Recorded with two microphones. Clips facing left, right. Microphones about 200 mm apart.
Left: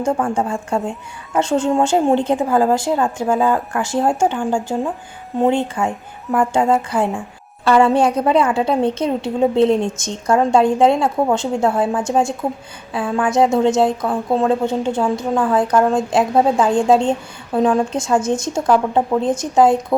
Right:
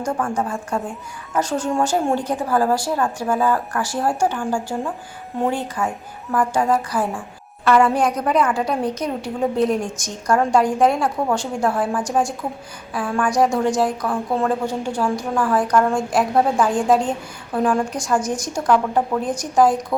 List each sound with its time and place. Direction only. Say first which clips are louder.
0.0 s a woman's voice: left 4 dB; 25° left (ahead or behind)